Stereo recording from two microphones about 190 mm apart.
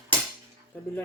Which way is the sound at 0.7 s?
5° left (ahead or behind).